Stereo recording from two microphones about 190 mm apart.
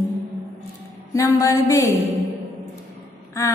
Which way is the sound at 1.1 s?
15° left (ahead or behind).